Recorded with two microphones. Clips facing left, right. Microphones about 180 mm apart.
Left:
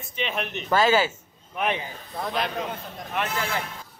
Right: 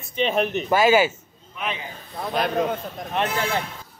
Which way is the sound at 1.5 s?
55° left (ahead or behind).